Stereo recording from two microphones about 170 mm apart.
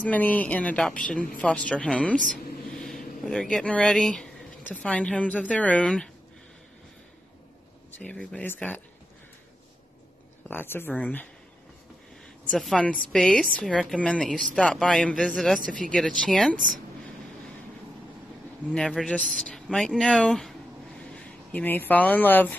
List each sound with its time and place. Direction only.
0.0 s speech: 10° left (ahead or behind)
8.0 s speech: 5° left (ahead or behind)
10.5 s speech: 10° left (ahead or behind)
12.4 s a woman's voice: 5° left (ahead or behind)
16.5 s speech: 50° right (ahead or behind)
18.7 s a woman's voice: centre (ahead or behind)